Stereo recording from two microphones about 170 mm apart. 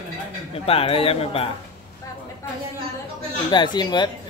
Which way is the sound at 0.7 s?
35° left (ahead or behind).